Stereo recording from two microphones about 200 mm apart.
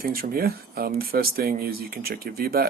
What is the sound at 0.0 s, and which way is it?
Speech, 45° right (ahead or behind).